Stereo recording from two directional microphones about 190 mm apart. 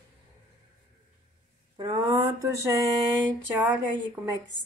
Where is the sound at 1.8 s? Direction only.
20° right (ahead or behind).